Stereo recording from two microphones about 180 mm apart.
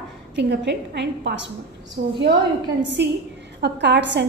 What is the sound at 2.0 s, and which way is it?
Speech, 50° right (ahead or behind).